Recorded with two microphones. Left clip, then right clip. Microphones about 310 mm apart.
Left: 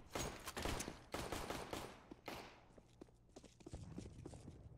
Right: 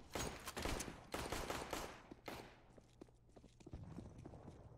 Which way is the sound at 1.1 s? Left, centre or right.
Right.